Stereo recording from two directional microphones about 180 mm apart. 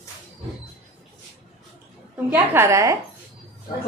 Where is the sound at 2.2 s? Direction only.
15° right (ahead or behind).